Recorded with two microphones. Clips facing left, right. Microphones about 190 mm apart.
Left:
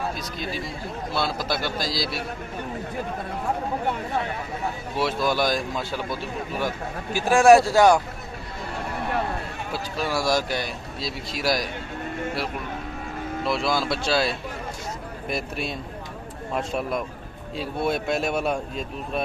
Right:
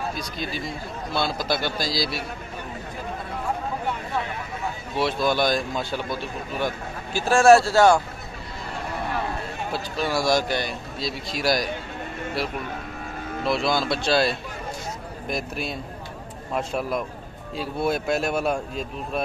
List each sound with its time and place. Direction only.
0.2 s speech: centre (ahead or behind)
4.9 s speech: 5° left (ahead or behind)
7.2 s speech: 15° left (ahead or behind)
9.9 s speech: 5° left (ahead or behind)
13.5 s speech: 5° left (ahead or behind)